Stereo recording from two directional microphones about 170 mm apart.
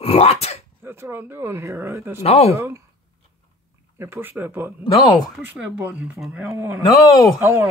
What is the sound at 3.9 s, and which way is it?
Speech, 15° right (ahead or behind).